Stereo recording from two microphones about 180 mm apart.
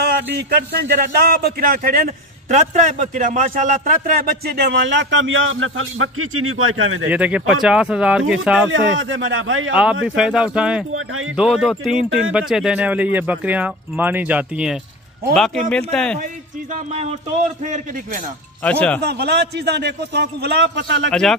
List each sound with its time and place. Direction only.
0.0 s a man's voice: 65° right (ahead or behind); by 7.1 s 90° right
7.1 s speech: 5° right (ahead or behind)
8.6 s a man's voice: 90° right
9.7 s speech: 5° right (ahead or behind)
16.9 s speech: 35° right (ahead or behind)
18.6 s speech: 10° left (ahead or behind)
19.0 s a man's voice: 65° right (ahead or behind); by 21.1 s 80° right
21.1 s speech: 5° left (ahead or behind)